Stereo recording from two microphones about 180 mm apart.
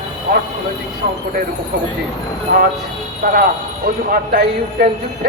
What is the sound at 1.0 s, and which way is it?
Speech, 55° right (ahead or behind).